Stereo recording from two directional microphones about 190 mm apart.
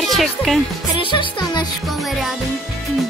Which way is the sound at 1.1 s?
25° left (ahead or behind).